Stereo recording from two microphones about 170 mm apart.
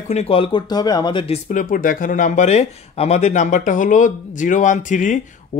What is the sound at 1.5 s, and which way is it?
Speech, 50° left (ahead or behind).